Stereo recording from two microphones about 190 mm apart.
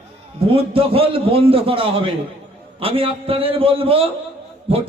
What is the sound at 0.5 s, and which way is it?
A man's voice, 30° right (ahead or behind).